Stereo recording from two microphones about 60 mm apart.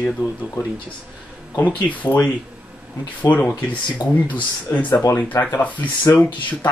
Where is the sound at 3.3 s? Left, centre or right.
Left.